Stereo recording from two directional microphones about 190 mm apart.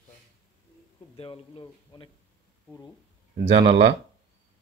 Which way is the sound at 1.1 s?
30° left (ahead or behind).